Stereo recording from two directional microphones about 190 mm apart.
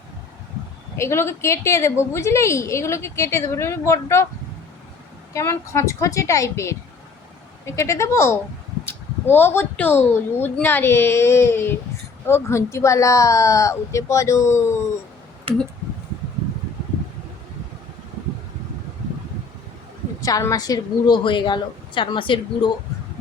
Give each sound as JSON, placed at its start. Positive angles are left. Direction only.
{"t": 0.9, "sound": "a woman's voice", "side_deg": 15}
{"t": 5.3, "sound": "a woman's voice", "side_deg": 15}
{"t": 20.2, "sound": "a woman's voice", "side_deg": 20}